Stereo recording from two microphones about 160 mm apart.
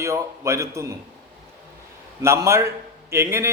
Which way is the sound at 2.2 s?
20° right (ahead or behind).